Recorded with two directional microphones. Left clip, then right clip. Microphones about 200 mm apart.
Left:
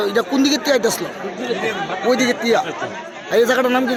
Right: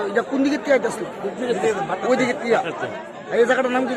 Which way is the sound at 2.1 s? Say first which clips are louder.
Left 3 dB; 50° left (ahead or behind).